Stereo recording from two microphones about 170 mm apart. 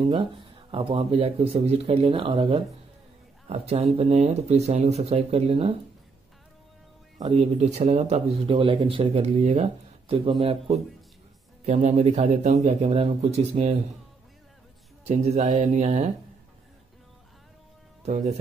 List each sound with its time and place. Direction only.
0.0 s speech: 30° right (ahead or behind)
7.2 s speech: 25° right (ahead or behind)
7.5 s speech: 40° right (ahead or behind)
15.0 s speech: 40° right (ahead or behind)